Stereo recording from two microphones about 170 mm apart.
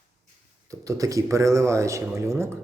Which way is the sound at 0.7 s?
20° right (ahead or behind).